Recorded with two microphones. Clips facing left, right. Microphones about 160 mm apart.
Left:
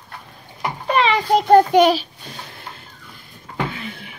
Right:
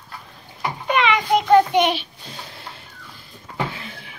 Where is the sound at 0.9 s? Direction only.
35° left (ahead or behind).